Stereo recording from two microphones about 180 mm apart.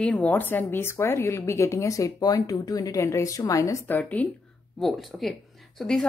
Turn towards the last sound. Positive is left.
turn(degrees=0)  # may be behind; listen again after turning